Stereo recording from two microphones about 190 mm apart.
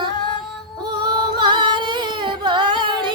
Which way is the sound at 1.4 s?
25° right (ahead or behind).